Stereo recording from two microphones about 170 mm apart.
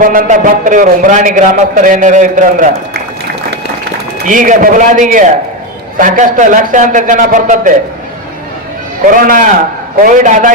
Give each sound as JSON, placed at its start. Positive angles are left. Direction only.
{"t": 0.0, "sound": "a man's voice", "side_deg": -55}
{"t": 4.3, "sound": "a man's voice", "side_deg": -50}
{"t": 9.0, "sound": "a man's voice", "side_deg": -55}